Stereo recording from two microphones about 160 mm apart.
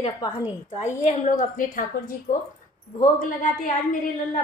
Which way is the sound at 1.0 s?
50° left (ahead or behind).